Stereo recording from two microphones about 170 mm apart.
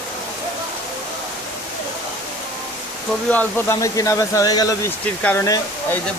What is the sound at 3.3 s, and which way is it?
Speech, 10° left (ahead or behind).